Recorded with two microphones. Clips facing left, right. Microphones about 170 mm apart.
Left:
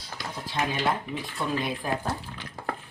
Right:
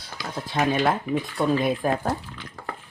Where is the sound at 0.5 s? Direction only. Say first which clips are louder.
Right 5 dB; 50° right (ahead or behind).